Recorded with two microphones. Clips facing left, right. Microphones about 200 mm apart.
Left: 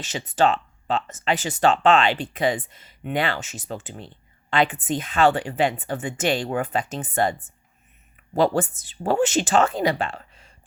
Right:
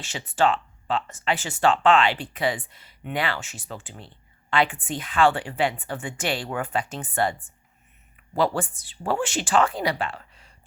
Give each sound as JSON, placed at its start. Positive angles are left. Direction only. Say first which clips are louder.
{"t": 0.3, "sound": "speech", "louder": "left 2 dB", "side_deg": 20}